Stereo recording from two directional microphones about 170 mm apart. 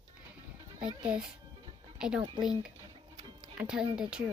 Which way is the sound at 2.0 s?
5° right (ahead or behind).